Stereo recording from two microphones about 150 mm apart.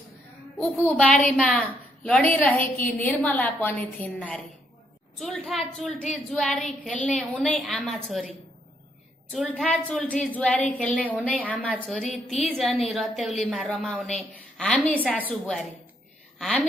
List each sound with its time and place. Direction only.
0.6 s a woman's voice: 10° left (ahead or behind)
9.3 s a woman's voice: centre (ahead or behind)